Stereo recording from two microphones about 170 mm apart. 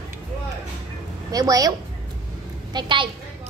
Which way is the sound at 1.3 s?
20° right (ahead or behind).